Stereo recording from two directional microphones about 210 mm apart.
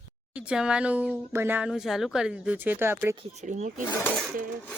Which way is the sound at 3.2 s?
35° right (ahead or behind).